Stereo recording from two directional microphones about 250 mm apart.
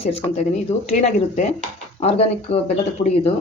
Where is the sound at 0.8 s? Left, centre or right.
Left.